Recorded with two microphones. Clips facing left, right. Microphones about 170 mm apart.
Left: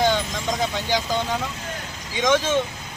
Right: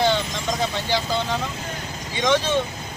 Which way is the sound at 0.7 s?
15° left (ahead or behind).